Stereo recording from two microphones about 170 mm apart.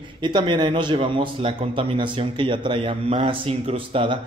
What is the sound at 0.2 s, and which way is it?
Speech, 25° right (ahead or behind).